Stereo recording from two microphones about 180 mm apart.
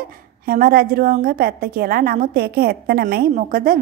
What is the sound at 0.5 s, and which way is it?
A woman's voice, 55° right (ahead or behind).